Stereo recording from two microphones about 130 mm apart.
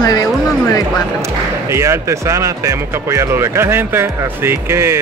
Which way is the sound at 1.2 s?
20° right (ahead or behind).